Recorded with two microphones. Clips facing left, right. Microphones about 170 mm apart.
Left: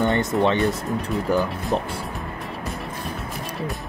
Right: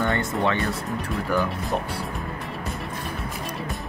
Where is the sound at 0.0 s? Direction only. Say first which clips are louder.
Left 4 dB; 20° left (ahead or behind).